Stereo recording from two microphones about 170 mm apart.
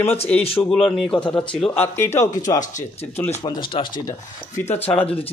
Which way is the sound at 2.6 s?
45° left (ahead or behind).